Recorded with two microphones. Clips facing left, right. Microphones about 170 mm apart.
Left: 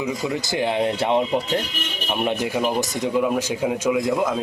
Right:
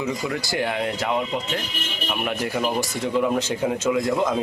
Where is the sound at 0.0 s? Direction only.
15° left (ahead or behind).